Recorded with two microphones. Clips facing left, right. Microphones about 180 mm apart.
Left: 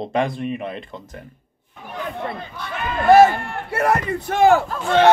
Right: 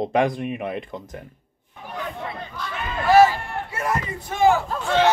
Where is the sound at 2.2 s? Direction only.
55° left (ahead or behind).